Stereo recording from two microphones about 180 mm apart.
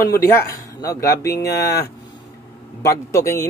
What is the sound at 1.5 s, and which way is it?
Speech, 65° left (ahead or behind).